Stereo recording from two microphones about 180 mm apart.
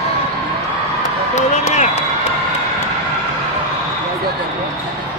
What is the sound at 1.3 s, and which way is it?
Speech, 40° left (ahead or behind).